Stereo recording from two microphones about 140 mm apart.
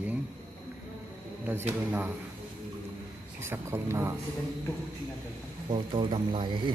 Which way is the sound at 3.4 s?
20° right (ahead or behind).